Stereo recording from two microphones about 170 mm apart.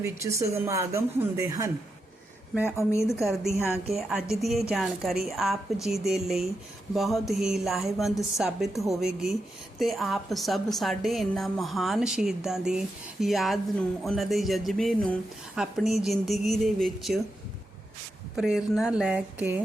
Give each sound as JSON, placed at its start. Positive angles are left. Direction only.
{"t": 0.0, "sound": "speech", "side_deg": -15}
{"t": 2.6, "sound": "a woman's voice", "side_deg": 15}
{"t": 3.2, "sound": "a woman's voice", "side_deg": 0}
{"t": 18.3, "sound": "a woman's voice", "side_deg": 0}